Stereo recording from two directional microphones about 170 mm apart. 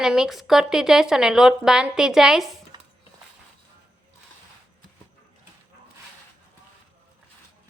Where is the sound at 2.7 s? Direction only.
25° right (ahead or behind).